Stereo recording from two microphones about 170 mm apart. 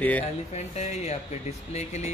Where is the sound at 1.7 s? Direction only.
40° left (ahead or behind).